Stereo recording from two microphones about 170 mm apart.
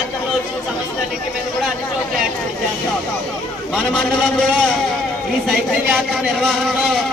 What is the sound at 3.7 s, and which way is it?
A man's voice, centre (ahead or behind).